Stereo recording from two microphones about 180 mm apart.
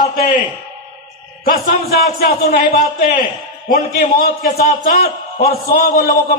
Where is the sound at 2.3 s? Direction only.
55° left (ahead or behind).